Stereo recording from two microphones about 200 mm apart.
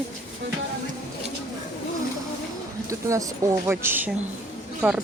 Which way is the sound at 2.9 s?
15° right (ahead or behind).